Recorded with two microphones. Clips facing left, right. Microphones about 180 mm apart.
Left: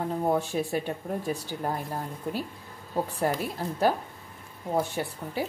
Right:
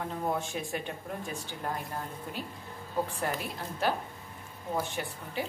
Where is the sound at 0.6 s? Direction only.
35° left (ahead or behind).